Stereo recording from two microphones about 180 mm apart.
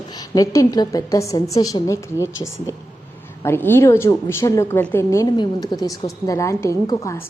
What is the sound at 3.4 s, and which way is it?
A woman's voice, 15° left (ahead or behind).